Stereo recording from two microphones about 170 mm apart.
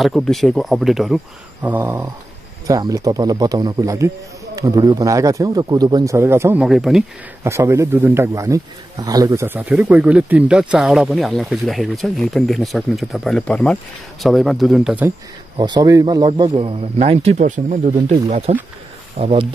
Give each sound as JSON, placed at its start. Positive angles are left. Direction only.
{"t": 0.0, "sound": "speech", "side_deg": 0}
{"t": 6.6, "sound": "speech", "side_deg": -5}
{"t": 7.4, "sound": "speech", "side_deg": -15}
{"t": 15.5, "sound": "speech", "side_deg": -25}